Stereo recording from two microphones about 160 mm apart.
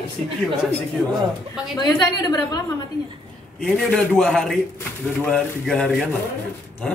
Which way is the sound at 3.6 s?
5° left (ahead or behind).